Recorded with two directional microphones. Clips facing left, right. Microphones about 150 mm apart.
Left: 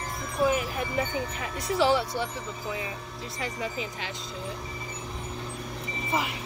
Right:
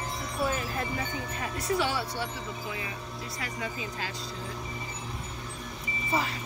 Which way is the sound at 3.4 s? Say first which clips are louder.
Left 5 dB; 20° left (ahead or behind).